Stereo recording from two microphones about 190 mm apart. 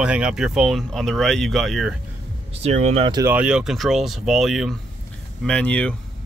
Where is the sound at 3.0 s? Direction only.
20° right (ahead or behind).